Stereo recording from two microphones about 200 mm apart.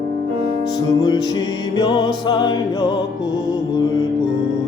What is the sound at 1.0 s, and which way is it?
Music, 20° left (ahead or behind).